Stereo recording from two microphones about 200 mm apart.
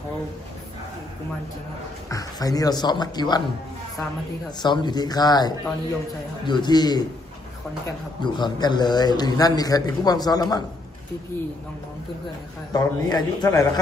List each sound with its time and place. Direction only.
2.0 s a man's voice: 15° left (ahead or behind)
4.6 s a man's voice: 20° left (ahead or behind)
8.2 s a man's voice: 20° left (ahead or behind)
12.7 s a man's voice: 20° left (ahead or behind)